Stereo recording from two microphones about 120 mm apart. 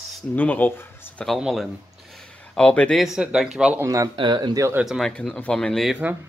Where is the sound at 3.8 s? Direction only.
25° right (ahead or behind).